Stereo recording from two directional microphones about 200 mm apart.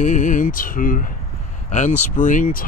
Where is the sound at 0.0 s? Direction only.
40° left (ahead or behind).